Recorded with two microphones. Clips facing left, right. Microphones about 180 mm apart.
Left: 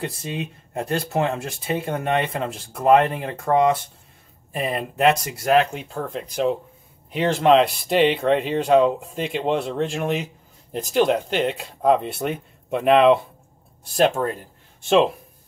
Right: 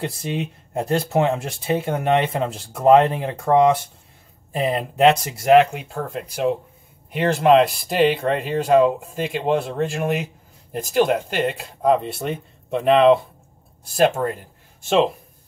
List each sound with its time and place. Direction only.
0.0 s speech: 25° right (ahead or behind)
6.1 s speech: 5° right (ahead or behind)
14.8 s speech: centre (ahead or behind)